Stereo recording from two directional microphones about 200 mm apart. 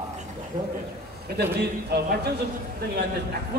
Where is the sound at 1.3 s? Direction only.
50° right (ahead or behind).